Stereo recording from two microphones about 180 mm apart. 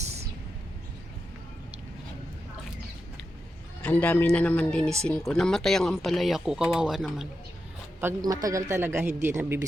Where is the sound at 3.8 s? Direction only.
10° left (ahead or behind).